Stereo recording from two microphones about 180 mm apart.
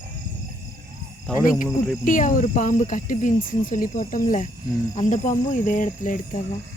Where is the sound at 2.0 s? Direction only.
45° left (ahead or behind).